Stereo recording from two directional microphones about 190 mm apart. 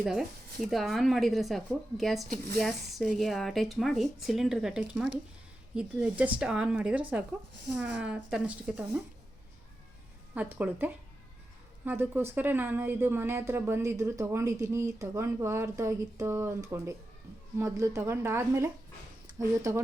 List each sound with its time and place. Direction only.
0.0 s speech: centre (ahead or behind)
8.0 s speech: 5° right (ahead or behind)
10.3 s speech: 10° right (ahead or behind)